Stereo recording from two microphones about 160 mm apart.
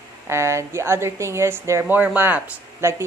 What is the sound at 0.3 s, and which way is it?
Speech, 15° right (ahead or behind).